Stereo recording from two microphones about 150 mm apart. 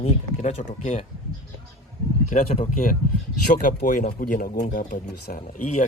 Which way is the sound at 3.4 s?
65° left (ahead or behind).